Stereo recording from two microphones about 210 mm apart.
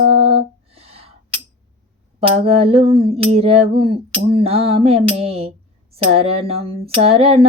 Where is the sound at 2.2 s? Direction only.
25° right (ahead or behind).